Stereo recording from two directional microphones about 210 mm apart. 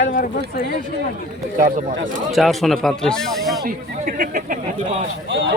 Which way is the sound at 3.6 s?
40° right (ahead or behind).